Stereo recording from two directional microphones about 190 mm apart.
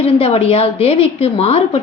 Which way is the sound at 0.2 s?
30° left (ahead or behind).